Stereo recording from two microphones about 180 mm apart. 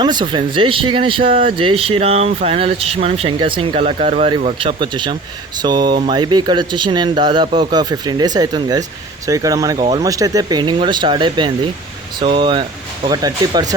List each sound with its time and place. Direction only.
0.0 s speech: 25° right (ahead or behind)